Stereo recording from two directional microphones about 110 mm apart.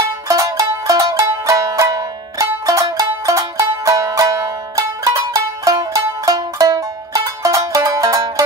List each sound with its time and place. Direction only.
0.3 s music: 30° right (ahead or behind)